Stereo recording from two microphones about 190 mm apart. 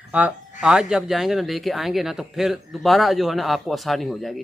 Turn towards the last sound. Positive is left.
turn(degrees=0)  # may be behind; listen again after turning